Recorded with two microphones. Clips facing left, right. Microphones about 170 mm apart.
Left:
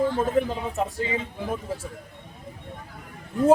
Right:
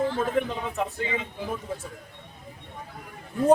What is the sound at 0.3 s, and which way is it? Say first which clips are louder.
Speech: left 2 dB; 30° left (ahead or behind).